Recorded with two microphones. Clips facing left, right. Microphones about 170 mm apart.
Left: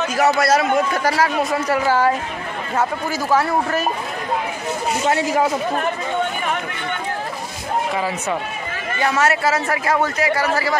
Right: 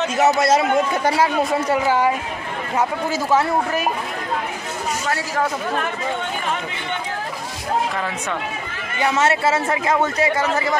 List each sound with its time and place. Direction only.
0.0 s a man's voice: 25° right (ahead or behind)
5.0 s speech: 20° left (ahead or behind)
9.0 s a man's voice: 20° right (ahead or behind)